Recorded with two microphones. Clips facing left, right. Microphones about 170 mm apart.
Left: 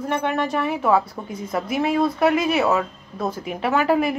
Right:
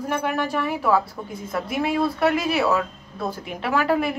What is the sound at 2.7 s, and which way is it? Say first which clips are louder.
Speech: left 1 dB; 25° left (ahead or behind).